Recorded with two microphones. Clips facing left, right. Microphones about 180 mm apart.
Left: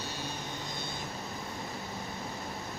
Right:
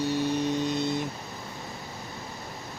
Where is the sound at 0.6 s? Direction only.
70° right (ahead or behind).